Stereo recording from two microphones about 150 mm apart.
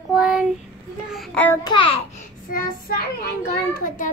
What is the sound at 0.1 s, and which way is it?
Child singing, 5° right (ahead or behind).